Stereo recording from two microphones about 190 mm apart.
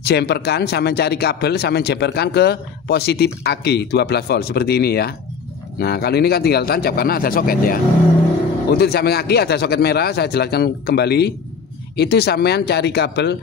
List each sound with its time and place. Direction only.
0.0 s speech: 60° left (ahead or behind)